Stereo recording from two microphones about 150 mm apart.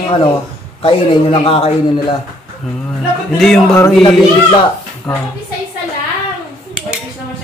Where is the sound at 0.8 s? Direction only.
40° left (ahead or behind).